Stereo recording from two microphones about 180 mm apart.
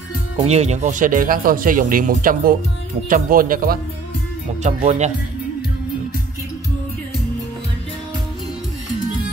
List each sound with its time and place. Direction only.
0.4 s speech: 35° right (ahead or behind); by 3.8 s 55° right (ahead or behind)
4.6 s speech: 40° right (ahead or behind)